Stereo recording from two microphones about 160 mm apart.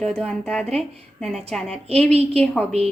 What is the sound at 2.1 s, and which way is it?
Speech, 40° right (ahead or behind).